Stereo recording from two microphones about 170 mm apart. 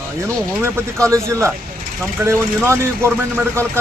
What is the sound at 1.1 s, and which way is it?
Speech, 15° right (ahead or behind).